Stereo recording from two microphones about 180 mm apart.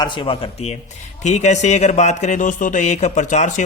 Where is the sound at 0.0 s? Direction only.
25° left (ahead or behind).